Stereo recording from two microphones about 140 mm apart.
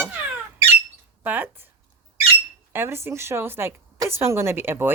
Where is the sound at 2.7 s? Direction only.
15° right (ahead or behind).